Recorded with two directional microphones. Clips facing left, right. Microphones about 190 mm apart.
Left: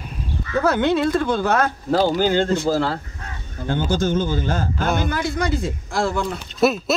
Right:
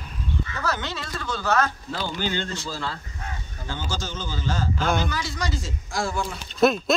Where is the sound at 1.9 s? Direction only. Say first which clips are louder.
Left 13 dB; 45° left (ahead or behind); by 6.4 s 60° left (ahead or behind).